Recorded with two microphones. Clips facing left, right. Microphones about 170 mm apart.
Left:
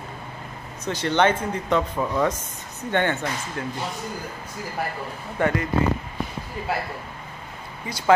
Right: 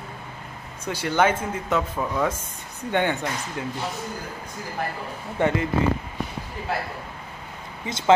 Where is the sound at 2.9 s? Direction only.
15° right (ahead or behind).